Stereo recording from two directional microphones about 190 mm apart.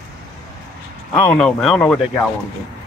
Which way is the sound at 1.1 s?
5° left (ahead or behind).